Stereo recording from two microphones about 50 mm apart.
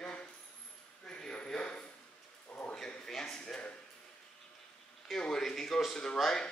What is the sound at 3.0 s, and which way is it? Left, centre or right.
Speech, centre.